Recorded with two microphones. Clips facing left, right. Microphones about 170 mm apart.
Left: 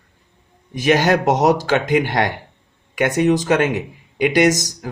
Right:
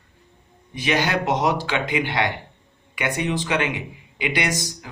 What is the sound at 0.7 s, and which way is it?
Speech, 45° left (ahead or behind).